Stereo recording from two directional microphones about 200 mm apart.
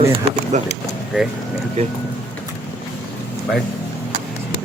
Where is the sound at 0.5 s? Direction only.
40° right (ahead or behind).